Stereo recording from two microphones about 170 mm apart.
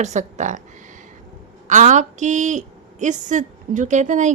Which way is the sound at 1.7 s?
45° right (ahead or behind).